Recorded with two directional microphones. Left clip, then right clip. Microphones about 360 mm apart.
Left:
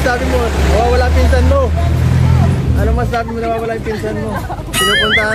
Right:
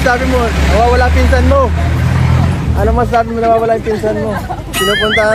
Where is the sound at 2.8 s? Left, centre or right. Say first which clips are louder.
Right 7 dB; centre.